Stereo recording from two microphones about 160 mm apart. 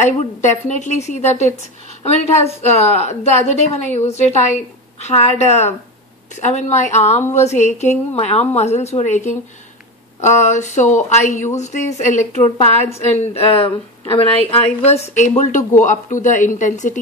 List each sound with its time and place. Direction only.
0.0 s a woman's voice: 45° left (ahead or behind)